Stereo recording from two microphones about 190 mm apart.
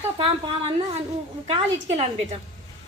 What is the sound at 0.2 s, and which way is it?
Speech, 30° right (ahead or behind).